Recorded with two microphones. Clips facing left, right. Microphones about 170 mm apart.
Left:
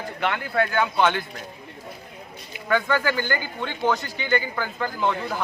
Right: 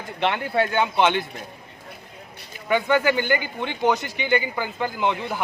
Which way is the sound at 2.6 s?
20° right (ahead or behind).